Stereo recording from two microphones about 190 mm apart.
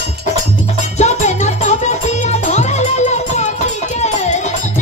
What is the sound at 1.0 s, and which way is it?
Music, 35° left (ahead or behind).